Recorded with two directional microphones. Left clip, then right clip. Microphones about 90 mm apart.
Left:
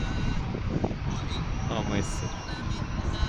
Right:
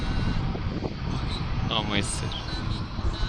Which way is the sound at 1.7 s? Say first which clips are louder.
Right 4 dB; 10° right (ahead or behind).